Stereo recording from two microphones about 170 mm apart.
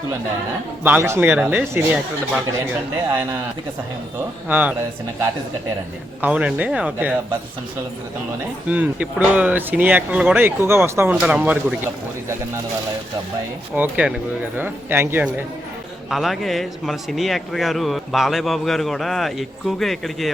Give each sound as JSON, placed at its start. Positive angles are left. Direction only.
{"t": 0.9, "sound": "speech", "side_deg": -15}
{"t": 4.4, "sound": "speech", "side_deg": -10}
{"t": 6.2, "sound": "speech", "side_deg": -10}
{"t": 8.7, "sound": "speech", "side_deg": -10}
{"t": 13.7, "sound": "speech", "side_deg": -10}
{"t": 16.0, "sound": "speech", "side_deg": 0}